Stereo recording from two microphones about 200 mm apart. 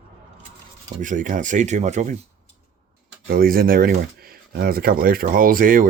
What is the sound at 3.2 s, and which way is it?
Speech, 45° right (ahead or behind).